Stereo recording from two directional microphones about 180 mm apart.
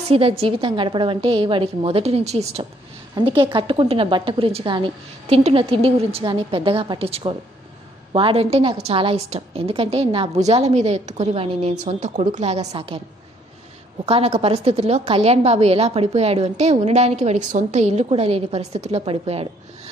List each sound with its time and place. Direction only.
0.1 s a woman's voice: 35° right (ahead or behind)
14.0 s a woman's voice: 35° right (ahead or behind)